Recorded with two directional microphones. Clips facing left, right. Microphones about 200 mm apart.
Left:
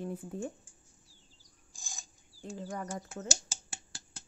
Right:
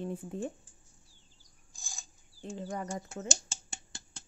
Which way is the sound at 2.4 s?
25° right (ahead or behind).